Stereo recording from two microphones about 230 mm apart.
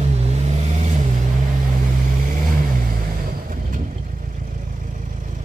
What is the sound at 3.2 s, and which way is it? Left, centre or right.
Vehicle, right.